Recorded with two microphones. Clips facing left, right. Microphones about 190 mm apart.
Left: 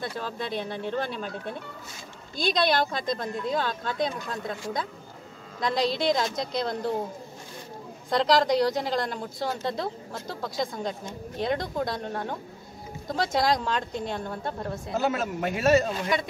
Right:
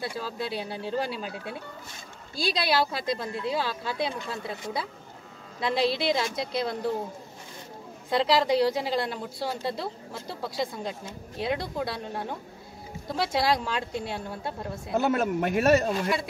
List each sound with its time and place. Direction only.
0.0 s a woman's voice: 10° right (ahead or behind)
2.3 s a woman's voice: 5° right (ahead or behind)
5.6 s a woman's voice: 5° right (ahead or behind)
8.1 s a woman's voice: 5° right (ahead or behind)
14.9 s speech: 55° right (ahead or behind)